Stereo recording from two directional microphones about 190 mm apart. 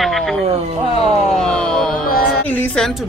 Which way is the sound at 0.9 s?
30° left (ahead or behind).